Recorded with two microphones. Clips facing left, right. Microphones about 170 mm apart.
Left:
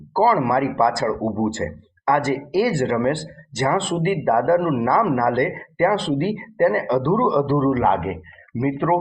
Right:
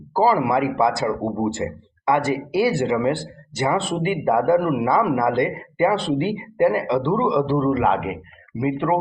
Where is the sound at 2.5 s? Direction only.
30° right (ahead or behind).